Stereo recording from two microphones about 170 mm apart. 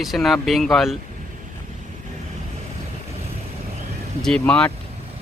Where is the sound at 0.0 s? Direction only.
Centre (ahead or behind).